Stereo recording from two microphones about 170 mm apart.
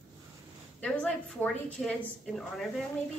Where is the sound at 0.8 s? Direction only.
5° left (ahead or behind).